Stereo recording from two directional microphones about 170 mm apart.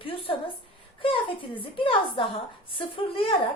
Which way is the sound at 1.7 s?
30° left (ahead or behind).